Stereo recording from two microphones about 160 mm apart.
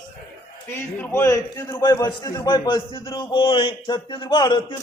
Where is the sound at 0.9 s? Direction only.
15° left (ahead or behind).